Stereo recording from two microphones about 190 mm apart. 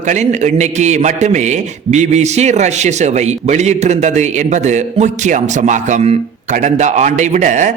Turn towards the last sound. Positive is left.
turn(degrees=-40)  # may be behind; listen again after turning